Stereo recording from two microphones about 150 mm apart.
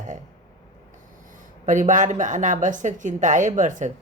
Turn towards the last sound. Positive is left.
turn(degrees=-55)  # may be behind; listen again after turning